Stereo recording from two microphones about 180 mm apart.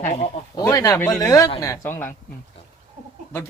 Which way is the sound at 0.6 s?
20° left (ahead or behind).